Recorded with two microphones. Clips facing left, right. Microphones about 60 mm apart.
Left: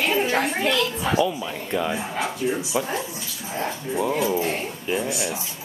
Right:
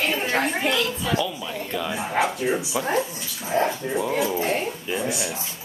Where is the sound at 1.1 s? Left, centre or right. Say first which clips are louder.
Left 3 dB; centre.